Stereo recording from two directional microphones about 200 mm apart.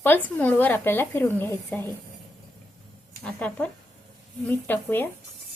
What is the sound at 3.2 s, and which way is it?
Speech, 5° left (ahead or behind).